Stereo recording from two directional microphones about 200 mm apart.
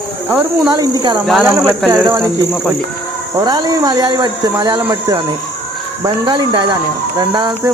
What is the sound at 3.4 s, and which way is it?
Speech, 20° right (ahead or behind).